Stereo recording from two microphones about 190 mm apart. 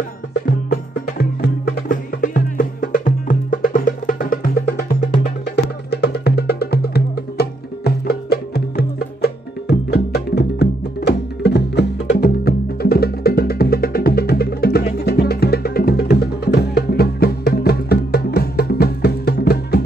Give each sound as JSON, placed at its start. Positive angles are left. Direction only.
{"t": 0.7, "sound": "music", "side_deg": 55}